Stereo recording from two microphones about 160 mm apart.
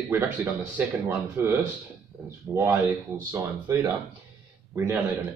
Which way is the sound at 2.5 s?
15° right (ahead or behind).